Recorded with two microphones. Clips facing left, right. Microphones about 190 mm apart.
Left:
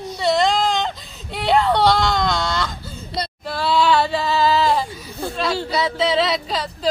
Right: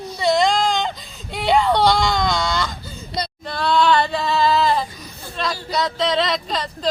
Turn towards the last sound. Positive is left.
turn(degrees=5)  # may be behind; listen again after turning